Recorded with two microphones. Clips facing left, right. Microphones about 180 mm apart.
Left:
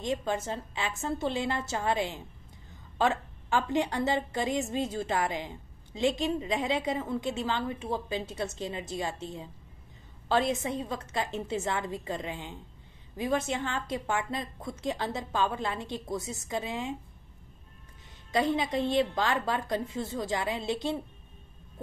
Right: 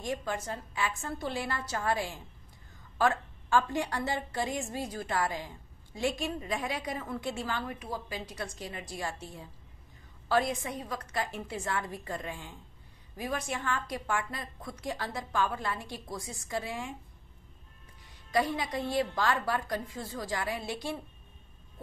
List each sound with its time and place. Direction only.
0.0 s a woman's voice: 20° left (ahead or behind)
18.3 s a woman's voice: 25° left (ahead or behind)